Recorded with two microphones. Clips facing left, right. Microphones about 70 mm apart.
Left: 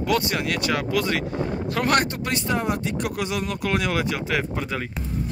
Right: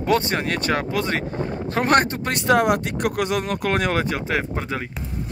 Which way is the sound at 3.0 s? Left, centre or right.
Right.